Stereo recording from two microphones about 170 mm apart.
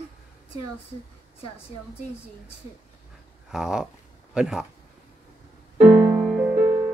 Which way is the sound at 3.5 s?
Centre (ahead or behind).